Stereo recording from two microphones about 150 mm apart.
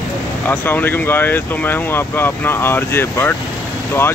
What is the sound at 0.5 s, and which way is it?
Speech, 10° left (ahead or behind).